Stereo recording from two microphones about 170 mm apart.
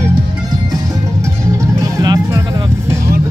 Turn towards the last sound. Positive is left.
turn(degrees=-20)  # may be behind; listen again after turning